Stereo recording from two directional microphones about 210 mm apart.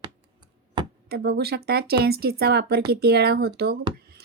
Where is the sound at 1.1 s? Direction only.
50° right (ahead or behind).